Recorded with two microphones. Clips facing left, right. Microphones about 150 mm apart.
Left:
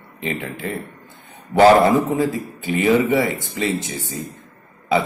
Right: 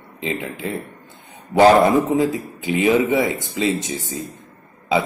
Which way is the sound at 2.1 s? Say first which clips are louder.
Right 2 dB; 20° right (ahead or behind).